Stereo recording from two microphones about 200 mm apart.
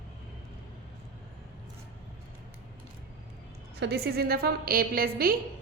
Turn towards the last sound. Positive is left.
turn(degrees=-45)  # may be behind; listen again after turning